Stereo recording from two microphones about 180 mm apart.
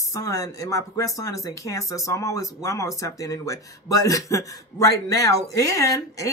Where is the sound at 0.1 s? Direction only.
20° left (ahead or behind).